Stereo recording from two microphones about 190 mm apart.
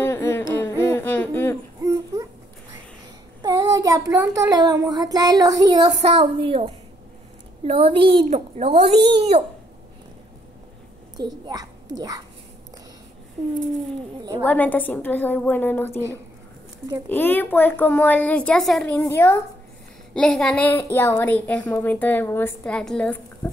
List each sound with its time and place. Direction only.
0.0 s a sound: 10° left (ahead or behind)
1.8 s a sound: 15° right (ahead or behind)
3.4 s child singing: 20° right (ahead or behind)
7.6 s a child's voice: 30° right (ahead or behind)
11.1 s a child's voice: 20° right (ahead or behind)
13.7 s speech: 20° right (ahead or behind)
14.4 s a woman's voice: 10° left (ahead or behind)
17.1 s a woman's voice: 10° left (ahead or behind)
18.9 s a woman's voice: 15° left (ahead or behind)